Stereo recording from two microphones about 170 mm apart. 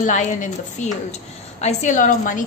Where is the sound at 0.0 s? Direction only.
45° left (ahead or behind).